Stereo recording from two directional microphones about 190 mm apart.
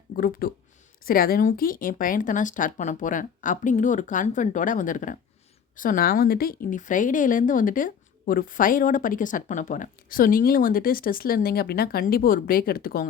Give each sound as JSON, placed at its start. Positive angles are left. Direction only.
{"t": 0.2, "sound": "a woman's voice", "side_deg": 50}